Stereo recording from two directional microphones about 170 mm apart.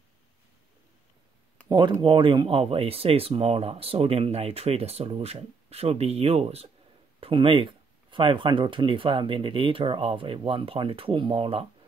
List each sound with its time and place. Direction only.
1.7 s speech: 25° right (ahead or behind)